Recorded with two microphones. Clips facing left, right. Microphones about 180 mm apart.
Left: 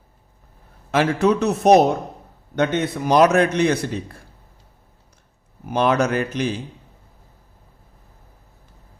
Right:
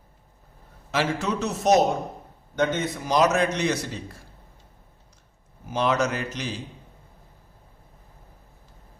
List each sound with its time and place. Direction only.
0.9 s a man's voice: 60° left (ahead or behind)
5.6 s a man's voice: 60° left (ahead or behind)